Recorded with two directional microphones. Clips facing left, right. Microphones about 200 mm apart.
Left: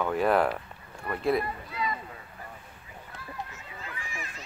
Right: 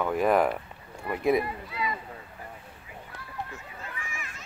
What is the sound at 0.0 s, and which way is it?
Speech, 10° right (ahead or behind).